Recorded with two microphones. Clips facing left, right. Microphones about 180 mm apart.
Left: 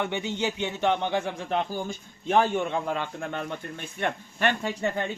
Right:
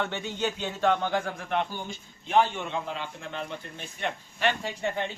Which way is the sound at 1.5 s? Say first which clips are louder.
Left 1 dB; 30° left (ahead or behind).